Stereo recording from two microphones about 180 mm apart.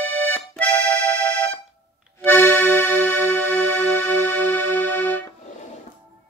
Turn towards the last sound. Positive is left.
turn(degrees=10)  # may be behind; listen again after turning